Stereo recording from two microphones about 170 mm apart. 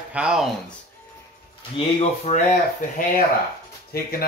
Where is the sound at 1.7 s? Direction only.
40° left (ahead or behind).